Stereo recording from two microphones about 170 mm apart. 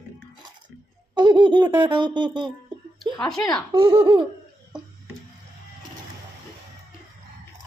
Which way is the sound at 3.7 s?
30° right (ahead or behind).